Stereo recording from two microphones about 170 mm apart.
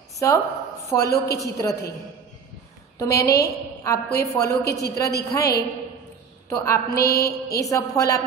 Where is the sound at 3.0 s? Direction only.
20° left (ahead or behind).